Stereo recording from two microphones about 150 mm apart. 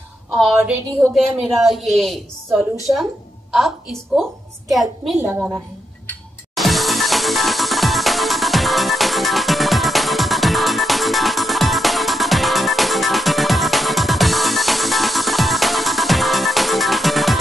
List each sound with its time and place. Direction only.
0.4 s a woman's voice: centre (ahead or behind)
5.2 s a woman's voice: 15° right (ahead or behind)
6.0 s music: centre (ahead or behind)